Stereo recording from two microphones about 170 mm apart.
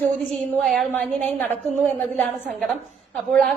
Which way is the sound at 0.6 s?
Centre (ahead or behind).